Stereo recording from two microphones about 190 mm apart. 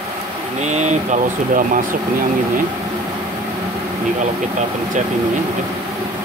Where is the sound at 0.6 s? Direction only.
40° right (ahead or behind).